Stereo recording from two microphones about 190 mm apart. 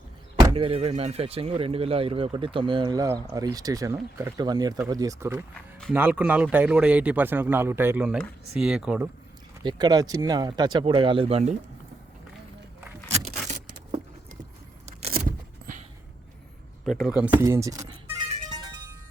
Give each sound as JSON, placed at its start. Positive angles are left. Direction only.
{"t": 0.3, "sound": "speech", "side_deg": -25}
{"t": 9.6, "sound": "speech", "side_deg": -20}
{"t": 14.8, "sound": "car", "side_deg": -35}
{"t": 15.3, "sound": "vehicle", "side_deg": -45}
{"t": 16.8, "sound": "speech", "side_deg": 0}
{"t": 18.4, "sound": "music", "side_deg": -20}